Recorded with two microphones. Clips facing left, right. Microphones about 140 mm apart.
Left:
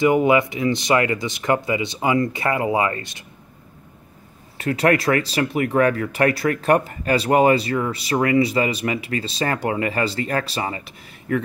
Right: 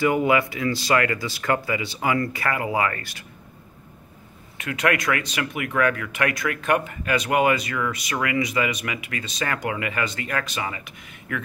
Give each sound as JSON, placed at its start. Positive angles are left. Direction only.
{"t": 0.0, "sound": "speech", "side_deg": 20}
{"t": 4.6, "sound": "speech", "side_deg": 35}